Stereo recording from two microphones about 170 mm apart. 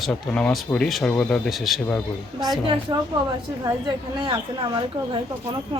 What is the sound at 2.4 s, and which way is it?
Speech, 25° right (ahead or behind).